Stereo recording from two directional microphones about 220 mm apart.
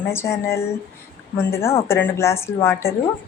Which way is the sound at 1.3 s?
10° left (ahead or behind).